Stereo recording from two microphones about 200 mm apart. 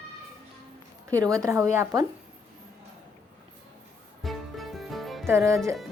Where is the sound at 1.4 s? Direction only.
15° right (ahead or behind).